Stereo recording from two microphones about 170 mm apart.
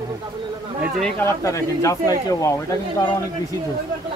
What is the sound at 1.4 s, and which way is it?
Speech, 20° left (ahead or behind).